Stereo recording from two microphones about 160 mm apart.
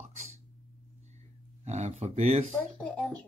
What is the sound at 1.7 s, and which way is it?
Speech, 45° right (ahead or behind).